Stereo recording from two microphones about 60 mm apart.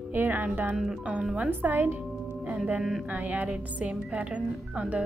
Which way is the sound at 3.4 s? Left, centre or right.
Centre.